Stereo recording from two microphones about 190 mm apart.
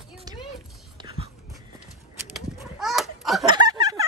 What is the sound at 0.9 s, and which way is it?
Whispering, 25° right (ahead or behind).